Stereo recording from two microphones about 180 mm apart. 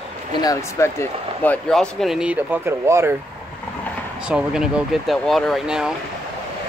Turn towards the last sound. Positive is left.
turn(degrees=-5)  # may be behind; listen again after turning